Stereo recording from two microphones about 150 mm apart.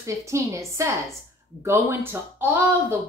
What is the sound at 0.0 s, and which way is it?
A woman's voice, 20° right (ahead or behind).